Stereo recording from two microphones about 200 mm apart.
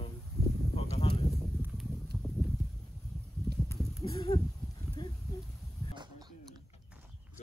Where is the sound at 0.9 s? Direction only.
30° left (ahead or behind).